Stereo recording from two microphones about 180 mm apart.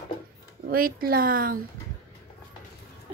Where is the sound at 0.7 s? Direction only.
55° right (ahead or behind).